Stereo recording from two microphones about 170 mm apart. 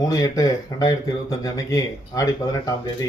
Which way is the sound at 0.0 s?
20° left (ahead or behind).